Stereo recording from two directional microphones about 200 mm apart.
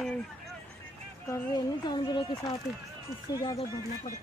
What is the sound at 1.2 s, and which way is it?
Speech, 15° left (ahead or behind).